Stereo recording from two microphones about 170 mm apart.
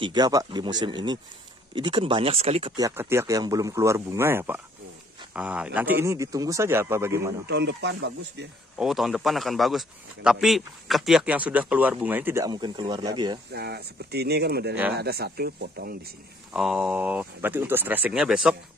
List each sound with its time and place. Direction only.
0.0 s speech: 25° right (ahead or behind)
2.7 s speech: 20° right (ahead or behind)
7.4 s speech: 85° right
8.7 s a man's voice: centre (ahead or behind)
12.4 s speech: 25° right (ahead or behind)
13.5 s speech: 70° right (ahead or behind)
16.5 s speech: 5° right (ahead or behind)